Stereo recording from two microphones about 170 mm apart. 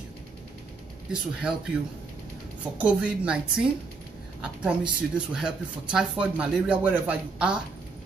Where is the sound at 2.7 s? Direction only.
5° right (ahead or behind).